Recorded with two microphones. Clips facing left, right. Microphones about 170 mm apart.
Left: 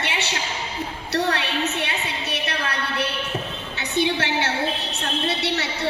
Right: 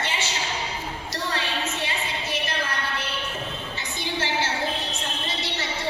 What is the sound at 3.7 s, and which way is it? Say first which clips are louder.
Music: left 10 dB; 65° left (ahead or behind).